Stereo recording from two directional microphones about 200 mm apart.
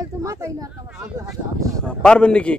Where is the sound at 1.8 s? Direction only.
5° left (ahead or behind).